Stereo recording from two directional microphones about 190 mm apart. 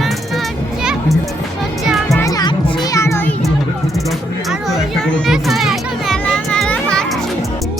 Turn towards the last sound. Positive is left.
turn(degrees=5)  # may be behind; listen again after turning